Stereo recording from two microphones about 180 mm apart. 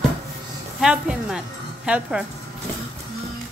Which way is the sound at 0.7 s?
5° right (ahead or behind).